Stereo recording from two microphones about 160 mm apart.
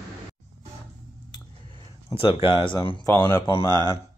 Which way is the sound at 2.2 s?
35° left (ahead or behind).